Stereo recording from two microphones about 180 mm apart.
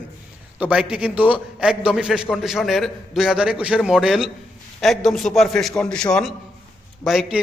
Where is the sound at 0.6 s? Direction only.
5° right (ahead or behind).